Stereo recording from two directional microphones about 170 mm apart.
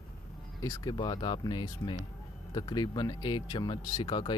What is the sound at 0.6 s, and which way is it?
Speech, 25° left (ahead or behind).